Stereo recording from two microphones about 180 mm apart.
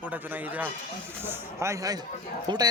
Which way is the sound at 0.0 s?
10° right (ahead or behind).